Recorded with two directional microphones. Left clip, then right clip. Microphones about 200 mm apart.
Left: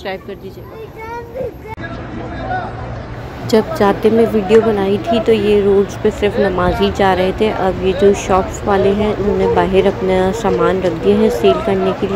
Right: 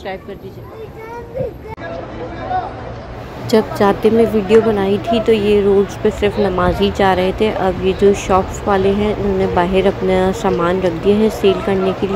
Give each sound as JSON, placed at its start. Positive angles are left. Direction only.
{"t": 3.4, "sound": "speech", "side_deg": 0}